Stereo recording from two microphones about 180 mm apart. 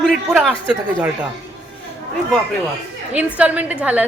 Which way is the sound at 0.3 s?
5° right (ahead or behind).